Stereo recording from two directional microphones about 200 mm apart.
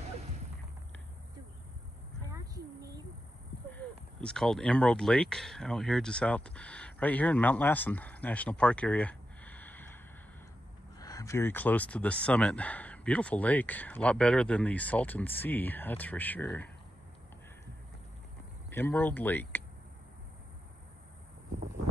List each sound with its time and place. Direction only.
2.3 s a sound: 15° right (ahead or behind)
3.7 s speech: 5° left (ahead or behind)
11.0 s speech: 15° left (ahead or behind)
18.7 s speech: 10° left (ahead or behind)